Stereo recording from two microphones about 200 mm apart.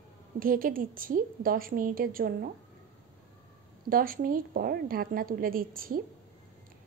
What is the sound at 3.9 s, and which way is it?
A woman's voice, 45° right (ahead or behind).